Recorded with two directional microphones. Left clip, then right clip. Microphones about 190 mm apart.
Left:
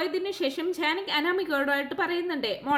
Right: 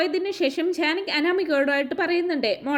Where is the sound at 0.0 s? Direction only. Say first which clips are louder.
Right 5 dB; 15° right (ahead or behind).